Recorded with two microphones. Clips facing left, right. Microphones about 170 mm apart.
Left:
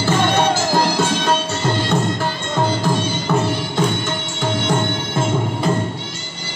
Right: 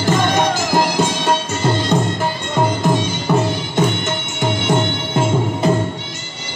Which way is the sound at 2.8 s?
20° right (ahead or behind).